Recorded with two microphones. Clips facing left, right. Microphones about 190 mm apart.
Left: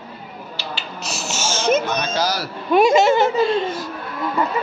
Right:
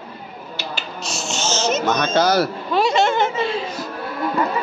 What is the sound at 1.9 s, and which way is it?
Speech, 60° right (ahead or behind).